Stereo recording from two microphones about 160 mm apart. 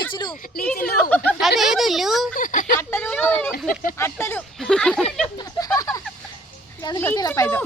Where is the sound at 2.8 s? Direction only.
15° left (ahead or behind).